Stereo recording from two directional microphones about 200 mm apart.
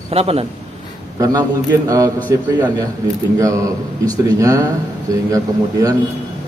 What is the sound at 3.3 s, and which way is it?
Mantra, 15° right (ahead or behind).